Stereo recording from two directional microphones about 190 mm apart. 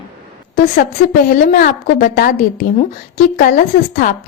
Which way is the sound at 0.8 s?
45° left (ahead or behind).